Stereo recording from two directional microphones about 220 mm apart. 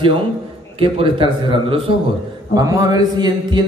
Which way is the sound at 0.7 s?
25° right (ahead or behind).